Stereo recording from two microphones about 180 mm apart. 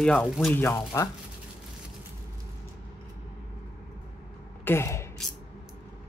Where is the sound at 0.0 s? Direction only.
5° left (ahead or behind).